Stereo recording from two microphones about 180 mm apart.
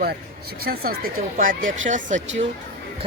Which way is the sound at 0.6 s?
60° right (ahead or behind).